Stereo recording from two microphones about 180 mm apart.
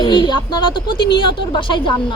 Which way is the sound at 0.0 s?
25° left (ahead or behind).